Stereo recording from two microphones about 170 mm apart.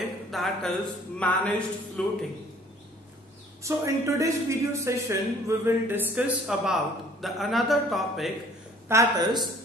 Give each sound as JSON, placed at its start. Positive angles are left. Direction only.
{"t": 0.3, "sound": "speech", "side_deg": 0}
{"t": 3.6, "sound": "a man's voice", "side_deg": -15}
{"t": 8.8, "sound": "a woman's voice", "side_deg": -20}